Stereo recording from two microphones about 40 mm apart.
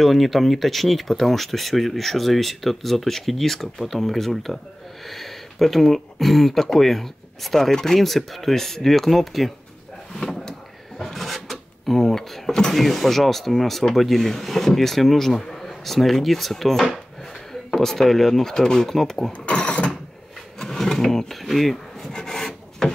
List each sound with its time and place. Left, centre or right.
0.0 s speech: centre
10.1 s drawer open or close: centre
11.0 s a sound: centre
11.8 s speech: centre
19.4 s mechanisms: left
20.5 s speech: centre
22.1 s filing: centre